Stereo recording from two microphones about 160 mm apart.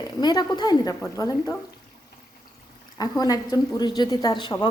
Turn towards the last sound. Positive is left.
turn(degrees=30)  # may be behind; listen again after turning